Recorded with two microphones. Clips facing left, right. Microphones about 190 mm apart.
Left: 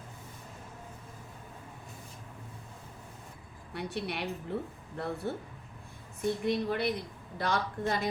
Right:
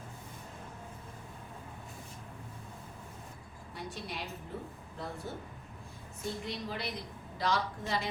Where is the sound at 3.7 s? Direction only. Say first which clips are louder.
Left 6 dB; 65° left (ahead or behind).